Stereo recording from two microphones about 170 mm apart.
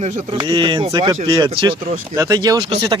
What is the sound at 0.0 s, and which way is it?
Speech, 30° right (ahead or behind).